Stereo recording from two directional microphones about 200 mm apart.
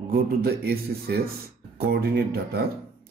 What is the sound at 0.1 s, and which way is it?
Speech, 50° right (ahead or behind).